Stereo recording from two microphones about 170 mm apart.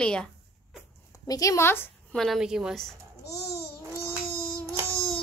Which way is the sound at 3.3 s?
70° left (ahead or behind).